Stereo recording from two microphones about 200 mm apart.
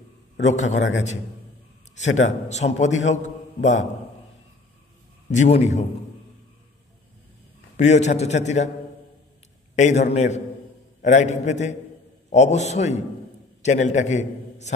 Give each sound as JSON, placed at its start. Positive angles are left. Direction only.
{"t": 0.4, "sound": "a man's voice", "side_deg": 35}
{"t": 2.2, "sound": "a man's voice", "side_deg": 35}
{"t": 5.3, "sound": "a man's voice", "side_deg": 35}
{"t": 7.7, "sound": "a man's voice", "side_deg": 35}
{"t": 9.8, "sound": "a man's voice", "side_deg": 35}